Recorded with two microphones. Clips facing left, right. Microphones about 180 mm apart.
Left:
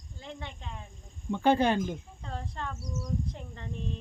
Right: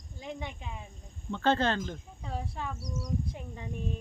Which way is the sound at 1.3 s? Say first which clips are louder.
Left 3 dB; 15° left (ahead or behind).